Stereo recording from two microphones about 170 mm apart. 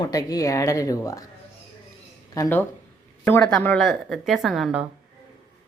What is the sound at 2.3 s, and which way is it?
A man's voice, 15° left (ahead or behind).